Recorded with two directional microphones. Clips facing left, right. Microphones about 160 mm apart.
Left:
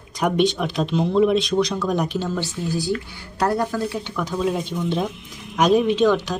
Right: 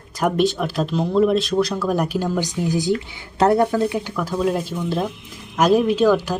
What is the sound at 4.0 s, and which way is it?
Speech, 5° right (ahead or behind).